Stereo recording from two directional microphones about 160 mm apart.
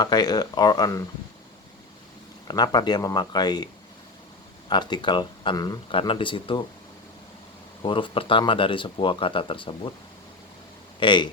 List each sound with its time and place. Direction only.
0.0 s speech: 25° left (ahead or behind)
2.5 s speech: 25° left (ahead or behind)
4.7 s speech: 30° left (ahead or behind)
7.8 s speech: 30° left (ahead or behind)
11.0 s speech: 30° left (ahead or behind)